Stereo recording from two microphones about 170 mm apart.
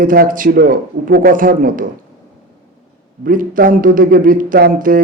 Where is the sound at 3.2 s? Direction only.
55° right (ahead or behind).